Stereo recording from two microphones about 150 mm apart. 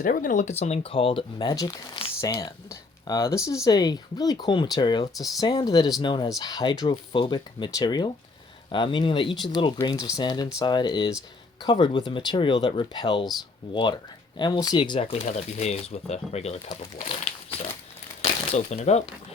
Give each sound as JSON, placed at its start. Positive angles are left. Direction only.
{"t": 0.0, "sound": "speech", "side_deg": 65}
{"t": 5.1, "sound": "speech", "side_deg": 0}
{"t": 5.4, "sound": "speech", "side_deg": 25}
{"t": 18.2, "sound": "a sound", "side_deg": 45}